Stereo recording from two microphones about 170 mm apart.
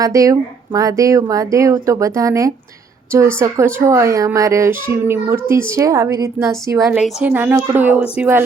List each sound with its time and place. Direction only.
0.0 s speech: 20° right (ahead or behind)
6.9 s speech: 5° right (ahead or behind)